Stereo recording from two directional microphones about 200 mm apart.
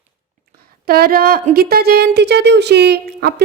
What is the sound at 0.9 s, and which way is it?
Speech, 50° right (ahead or behind).